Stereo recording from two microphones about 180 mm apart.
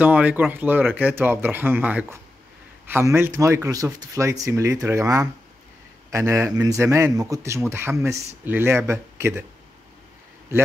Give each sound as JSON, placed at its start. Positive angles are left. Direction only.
{"t": 0.0, "sound": "speech", "side_deg": -10}